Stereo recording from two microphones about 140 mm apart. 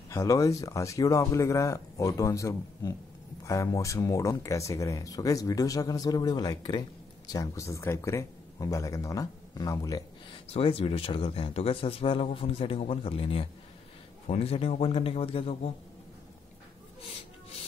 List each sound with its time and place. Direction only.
0.1 s speech: 20° left (ahead or behind)
10.5 s a man's voice: 45° left (ahead or behind)